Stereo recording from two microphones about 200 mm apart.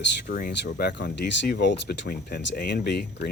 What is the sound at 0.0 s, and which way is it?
Speech, 50° left (ahead or behind).